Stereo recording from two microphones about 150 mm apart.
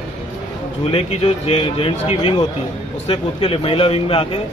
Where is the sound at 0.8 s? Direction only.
40° left (ahead or behind).